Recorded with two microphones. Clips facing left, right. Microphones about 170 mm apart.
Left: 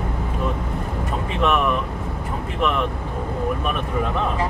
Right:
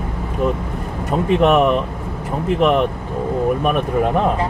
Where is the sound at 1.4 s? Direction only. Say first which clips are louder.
Right 5 dB; 45° right (ahead or behind).